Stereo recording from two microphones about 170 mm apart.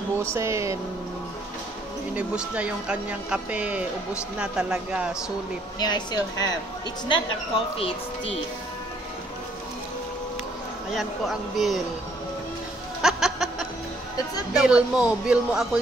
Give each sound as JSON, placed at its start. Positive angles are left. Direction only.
{"t": 0.2, "sound": "speech", "side_deg": -15}
{"t": 2.1, "sound": "speech", "side_deg": -5}
{"t": 5.8, "sound": "a woman's voice", "side_deg": 25}
{"t": 7.1, "sound": "speech", "side_deg": 30}
{"t": 10.9, "sound": "speech", "side_deg": 0}
{"t": 13.0, "sound": "music", "side_deg": 0}
{"t": 14.6, "sound": "speech", "side_deg": -5}